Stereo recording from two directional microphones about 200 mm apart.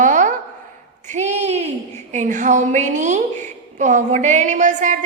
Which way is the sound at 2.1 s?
40° right (ahead or behind).